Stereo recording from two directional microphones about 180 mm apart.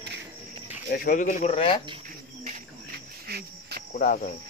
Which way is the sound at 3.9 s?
45° left (ahead or behind).